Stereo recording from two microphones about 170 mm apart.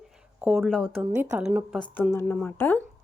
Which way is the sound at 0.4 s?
Centre (ahead or behind).